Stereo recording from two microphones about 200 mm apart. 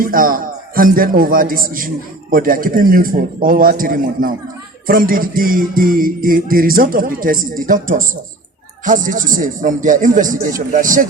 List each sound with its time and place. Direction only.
0.0 s music: 45° right (ahead or behind)
8.8 s speech: 40° right (ahead or behind)